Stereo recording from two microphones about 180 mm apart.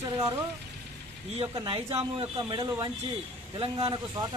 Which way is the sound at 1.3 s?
30° right (ahead or behind).